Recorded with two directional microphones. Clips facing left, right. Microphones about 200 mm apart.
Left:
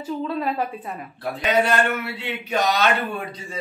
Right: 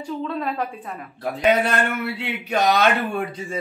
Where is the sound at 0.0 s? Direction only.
5° left (ahead or behind).